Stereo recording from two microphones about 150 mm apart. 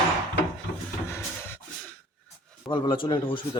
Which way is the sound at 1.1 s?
15° left (ahead or behind).